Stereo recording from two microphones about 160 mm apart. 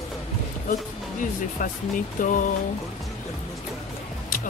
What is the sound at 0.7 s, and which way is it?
Speech, 55° left (ahead or behind).